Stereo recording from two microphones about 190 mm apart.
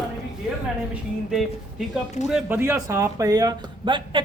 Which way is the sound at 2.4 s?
10° right (ahead or behind).